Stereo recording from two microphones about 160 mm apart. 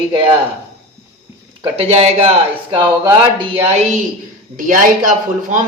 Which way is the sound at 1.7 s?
40° right (ahead or behind).